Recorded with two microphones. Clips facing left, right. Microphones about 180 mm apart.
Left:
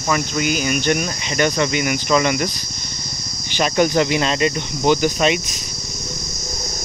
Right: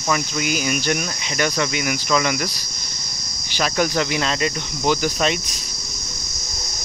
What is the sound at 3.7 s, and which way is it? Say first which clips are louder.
Speech: left 5 dB; 20° left (ahead or behind).